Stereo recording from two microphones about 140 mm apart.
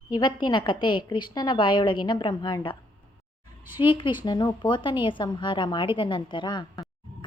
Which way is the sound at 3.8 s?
35° left (ahead or behind).